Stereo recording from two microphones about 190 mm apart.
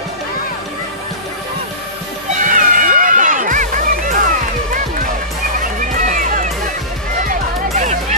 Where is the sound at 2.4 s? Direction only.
45° right (ahead or behind).